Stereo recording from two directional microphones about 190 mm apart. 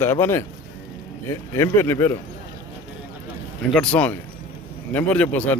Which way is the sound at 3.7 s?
5° left (ahead or behind).